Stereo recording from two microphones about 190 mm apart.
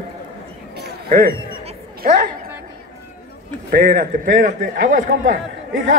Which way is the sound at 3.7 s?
55° right (ahead or behind).